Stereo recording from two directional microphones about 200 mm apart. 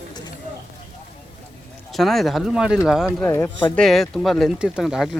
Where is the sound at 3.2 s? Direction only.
10° left (ahead or behind).